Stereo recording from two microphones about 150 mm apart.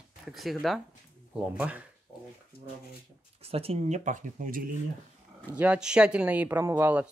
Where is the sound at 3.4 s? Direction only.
40° right (ahead or behind); by 4.6 s 65° right (ahead or behind).